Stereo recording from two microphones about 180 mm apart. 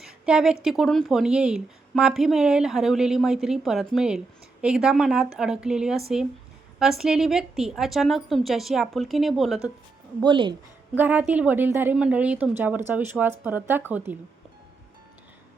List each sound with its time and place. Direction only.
0.0 s speech: 5° right (ahead or behind)
10.2 s speech: 25° right (ahead or behind)
10.9 s a woman's voice: 10° right (ahead or behind)